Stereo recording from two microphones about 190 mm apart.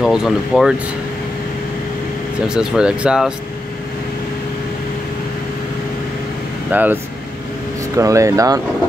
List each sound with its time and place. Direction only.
0.0 s speech: centre (ahead or behind)
2.4 s speech: 5° right (ahead or behind)
6.7 s speech: 10° right (ahead or behind)